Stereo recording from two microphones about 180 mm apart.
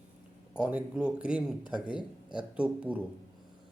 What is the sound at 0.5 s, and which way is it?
A man's voice, 5° right (ahead or behind).